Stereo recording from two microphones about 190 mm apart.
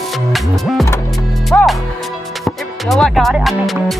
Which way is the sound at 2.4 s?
Centre (ahead or behind).